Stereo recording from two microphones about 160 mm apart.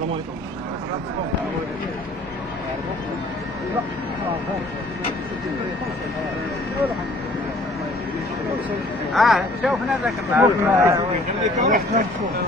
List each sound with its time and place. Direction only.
9.1 s speech: centre (ahead or behind)
10.4 s speech: 15° right (ahead or behind)
11.5 s speech: 50° right (ahead or behind)